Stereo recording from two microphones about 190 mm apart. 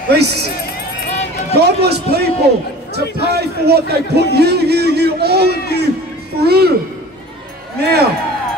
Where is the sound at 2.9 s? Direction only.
60° left (ahead or behind).